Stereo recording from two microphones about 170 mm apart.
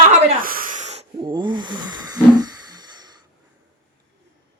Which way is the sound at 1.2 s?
25° right (ahead or behind).